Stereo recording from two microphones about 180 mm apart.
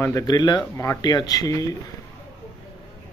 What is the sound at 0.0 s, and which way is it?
Speech, 20° left (ahead or behind).